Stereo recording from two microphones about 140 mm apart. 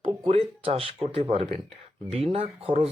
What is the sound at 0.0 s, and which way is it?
Speech, 50° right (ahead or behind).